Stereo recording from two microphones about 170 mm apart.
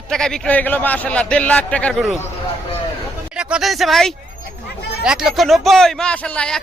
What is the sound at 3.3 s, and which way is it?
A man's voice, 5° right (ahead or behind).